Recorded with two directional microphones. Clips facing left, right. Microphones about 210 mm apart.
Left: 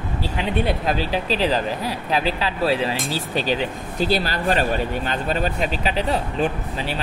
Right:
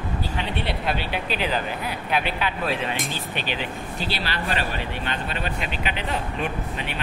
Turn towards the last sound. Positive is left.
turn(degrees=35)  # may be behind; listen again after turning